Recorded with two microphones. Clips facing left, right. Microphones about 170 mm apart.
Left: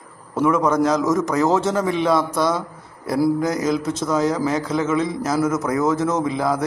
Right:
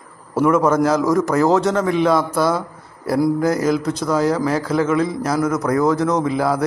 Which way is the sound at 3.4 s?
20° left (ahead or behind).